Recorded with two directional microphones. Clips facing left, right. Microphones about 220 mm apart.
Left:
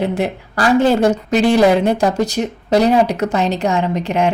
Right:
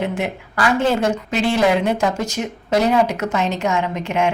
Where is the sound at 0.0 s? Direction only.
35° left (ahead or behind).